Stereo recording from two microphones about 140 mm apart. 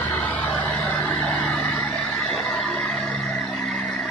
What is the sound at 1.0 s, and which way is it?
Vehicle, 10° left (ahead or behind).